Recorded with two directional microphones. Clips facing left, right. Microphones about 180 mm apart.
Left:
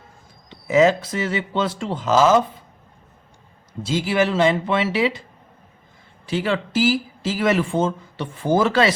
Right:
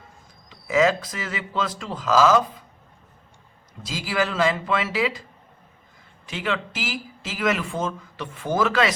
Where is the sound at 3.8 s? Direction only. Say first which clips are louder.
Left 6 dB; 25° left (ahead or behind).